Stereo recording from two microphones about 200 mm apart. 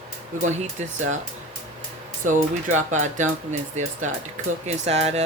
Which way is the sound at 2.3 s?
40° right (ahead or behind).